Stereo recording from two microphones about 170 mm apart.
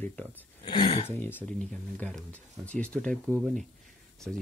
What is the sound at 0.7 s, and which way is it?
Speech, 35° left (ahead or behind).